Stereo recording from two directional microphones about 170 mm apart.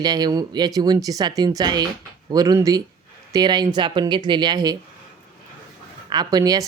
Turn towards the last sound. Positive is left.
turn(degrees=-20)  # may be behind; listen again after turning